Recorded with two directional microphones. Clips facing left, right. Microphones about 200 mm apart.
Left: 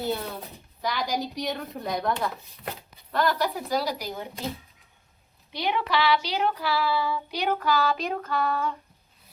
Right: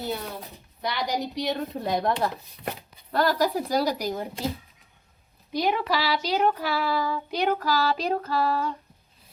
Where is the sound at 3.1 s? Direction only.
40° right (ahead or behind).